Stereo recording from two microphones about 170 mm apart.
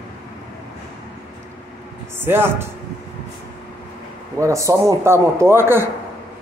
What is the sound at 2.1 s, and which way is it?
Speech, 15° right (ahead or behind).